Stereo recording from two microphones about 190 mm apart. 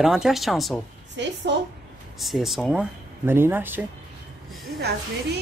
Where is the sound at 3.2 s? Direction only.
10° right (ahead or behind).